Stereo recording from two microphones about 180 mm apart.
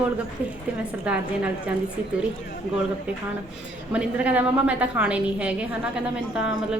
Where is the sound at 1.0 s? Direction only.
5° right (ahead or behind).